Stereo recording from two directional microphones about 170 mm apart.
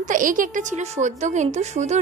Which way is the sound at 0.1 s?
50° right (ahead or behind).